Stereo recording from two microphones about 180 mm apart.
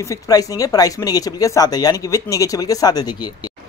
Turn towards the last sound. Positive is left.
turn(degrees=20)  # may be behind; listen again after turning